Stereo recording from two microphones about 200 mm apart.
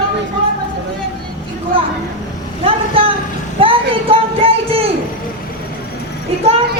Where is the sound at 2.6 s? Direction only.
25° right (ahead or behind).